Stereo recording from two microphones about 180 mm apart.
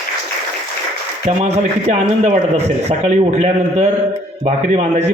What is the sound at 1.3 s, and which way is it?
A man's voice, 35° right (ahead or behind).